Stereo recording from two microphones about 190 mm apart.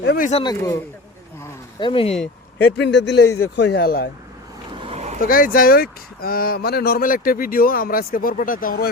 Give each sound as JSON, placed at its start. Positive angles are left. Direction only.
{"t": 0.0, "sound": "speech", "side_deg": 60}
{"t": 0.4, "sound": "speech", "side_deg": 15}
{"t": 1.8, "sound": "speech", "side_deg": 25}
{"t": 2.1, "sound": "speech", "side_deg": 5}
{"t": 2.7, "sound": "speech", "side_deg": 65}
{"t": 4.8, "sound": "vehicle", "side_deg": -35}
{"t": 5.2, "sound": "speech", "side_deg": 50}